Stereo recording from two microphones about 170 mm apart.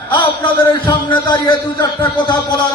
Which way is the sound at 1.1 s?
25° left (ahead or behind).